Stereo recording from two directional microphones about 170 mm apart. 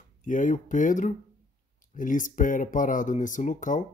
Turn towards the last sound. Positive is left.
turn(degrees=50)  # may be behind; listen again after turning